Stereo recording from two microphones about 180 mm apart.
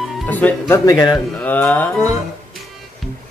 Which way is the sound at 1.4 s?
10° left (ahead or behind).